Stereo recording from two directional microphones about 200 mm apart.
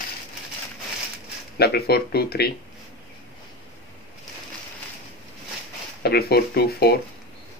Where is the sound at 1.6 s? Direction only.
50° left (ahead or behind).